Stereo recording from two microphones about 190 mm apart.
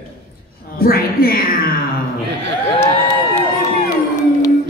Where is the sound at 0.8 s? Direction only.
50° left (ahead or behind).